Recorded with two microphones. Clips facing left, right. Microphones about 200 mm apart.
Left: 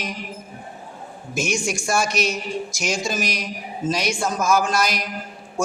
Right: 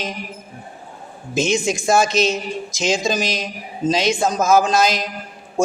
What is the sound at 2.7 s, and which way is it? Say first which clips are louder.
Speech: right 9 dB; 90° right.